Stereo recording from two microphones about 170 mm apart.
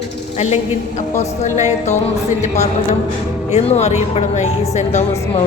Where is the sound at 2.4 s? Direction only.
40° left (ahead or behind).